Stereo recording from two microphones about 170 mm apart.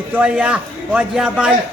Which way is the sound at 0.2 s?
5° right (ahead or behind).